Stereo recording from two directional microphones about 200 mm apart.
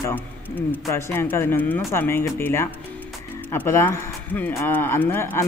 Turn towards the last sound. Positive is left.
turn(degrees=10)  # may be behind; listen again after turning